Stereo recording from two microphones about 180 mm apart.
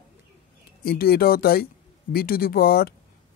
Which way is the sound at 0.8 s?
60° left (ahead or behind).